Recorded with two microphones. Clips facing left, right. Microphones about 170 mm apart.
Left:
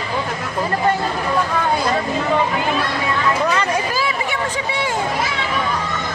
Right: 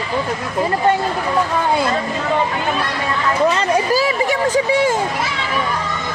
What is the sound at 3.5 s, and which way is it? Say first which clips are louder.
Speech: right 4 dB; 35° right (ahead or behind).